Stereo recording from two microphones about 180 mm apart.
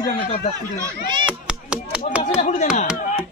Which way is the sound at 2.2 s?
40° left (ahead or behind).